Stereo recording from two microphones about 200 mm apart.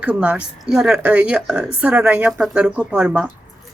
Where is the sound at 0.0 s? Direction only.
5° right (ahead or behind).